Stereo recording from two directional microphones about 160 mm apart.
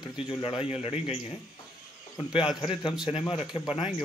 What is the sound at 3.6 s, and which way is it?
Speech, centre (ahead or behind).